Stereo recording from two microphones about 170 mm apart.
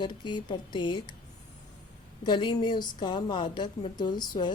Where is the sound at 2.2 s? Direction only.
25° left (ahead or behind).